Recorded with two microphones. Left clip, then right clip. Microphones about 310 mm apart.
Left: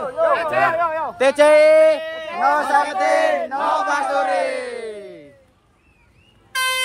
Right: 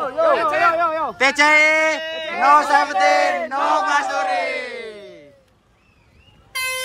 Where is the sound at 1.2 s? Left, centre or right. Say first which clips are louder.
Left 2 dB; centre.